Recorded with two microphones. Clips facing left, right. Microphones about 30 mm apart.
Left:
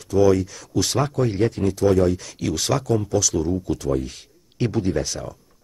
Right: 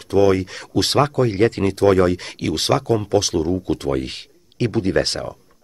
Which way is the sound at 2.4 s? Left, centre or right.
Right.